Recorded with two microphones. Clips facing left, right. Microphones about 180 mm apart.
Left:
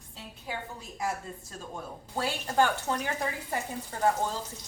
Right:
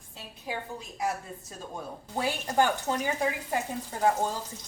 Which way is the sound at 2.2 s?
15° right (ahead or behind).